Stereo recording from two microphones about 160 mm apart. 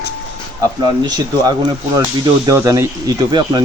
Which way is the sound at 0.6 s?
25° right (ahead or behind).